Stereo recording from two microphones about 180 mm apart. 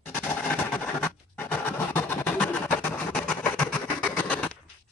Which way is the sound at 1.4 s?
10° left (ahead or behind).